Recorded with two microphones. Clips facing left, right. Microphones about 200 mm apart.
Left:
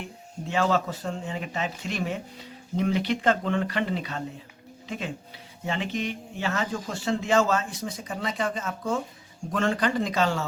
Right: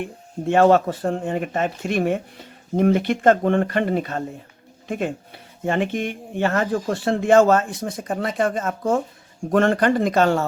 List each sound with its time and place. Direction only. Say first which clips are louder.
0.0 s speech: right 10 dB; 55° right (ahead or behind)